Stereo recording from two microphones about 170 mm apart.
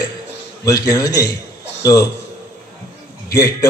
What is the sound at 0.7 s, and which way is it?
A man's voice, 20° left (ahead or behind).